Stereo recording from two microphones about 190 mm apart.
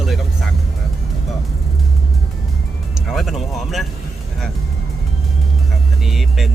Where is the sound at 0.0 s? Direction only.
Centre (ahead or behind).